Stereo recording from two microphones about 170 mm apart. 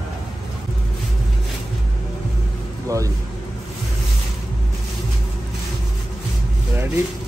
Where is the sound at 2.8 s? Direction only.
20° right (ahead or behind).